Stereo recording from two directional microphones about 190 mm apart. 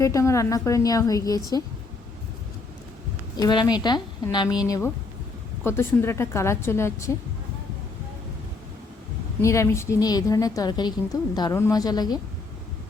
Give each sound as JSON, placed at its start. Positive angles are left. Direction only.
{"t": 0.0, "sound": "a woman's voice", "side_deg": 15}
{"t": 3.3, "sound": "a woman's voice", "side_deg": 20}
{"t": 5.6, "sound": "a woman's voice", "side_deg": 10}
{"t": 9.4, "sound": "a woman's voice", "side_deg": 15}